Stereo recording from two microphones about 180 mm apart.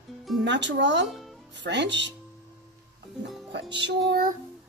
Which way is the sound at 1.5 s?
80° right.